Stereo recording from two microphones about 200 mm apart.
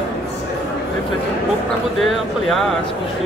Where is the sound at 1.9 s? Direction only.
Centre (ahead or behind).